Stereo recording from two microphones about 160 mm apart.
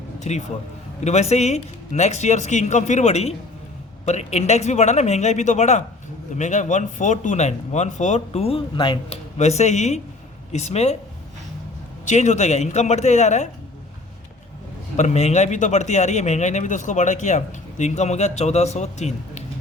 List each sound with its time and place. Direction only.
0.2 s a man's voice: 45° left (ahead or behind); by 9.1 s 30° left (ahead or behind)
9.4 s a man's voice: 45° left (ahead or behind)
12.0 s a man's voice: 45° left (ahead or behind)
14.9 s a man's voice: 45° left (ahead or behind)